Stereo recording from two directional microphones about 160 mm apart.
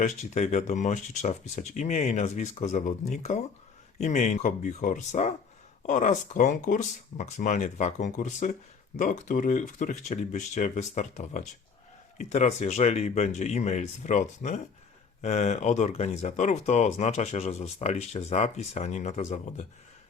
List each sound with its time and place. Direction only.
0.0 s speech: 45° left (ahead or behind)